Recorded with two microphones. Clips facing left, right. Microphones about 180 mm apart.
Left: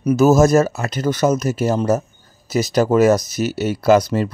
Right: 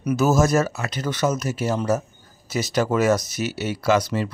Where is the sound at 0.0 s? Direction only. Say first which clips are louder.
Left 6 dB; 40° left (ahead or behind).